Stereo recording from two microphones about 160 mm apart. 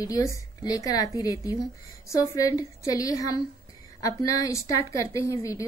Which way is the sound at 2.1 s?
20° left (ahead or behind).